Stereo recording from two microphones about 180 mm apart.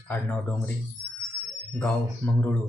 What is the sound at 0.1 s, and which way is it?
Speech, 10° left (ahead or behind).